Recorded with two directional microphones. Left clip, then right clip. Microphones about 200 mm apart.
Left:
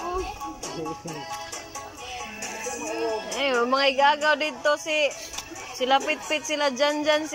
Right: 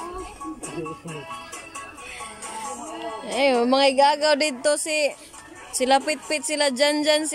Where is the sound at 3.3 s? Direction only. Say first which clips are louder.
Right 5 dB; 20° right (ahead or behind).